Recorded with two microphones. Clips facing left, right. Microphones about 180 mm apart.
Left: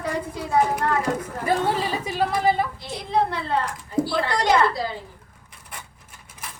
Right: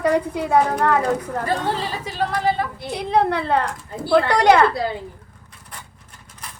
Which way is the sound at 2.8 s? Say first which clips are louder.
Right 4 dB; 65° right (ahead or behind).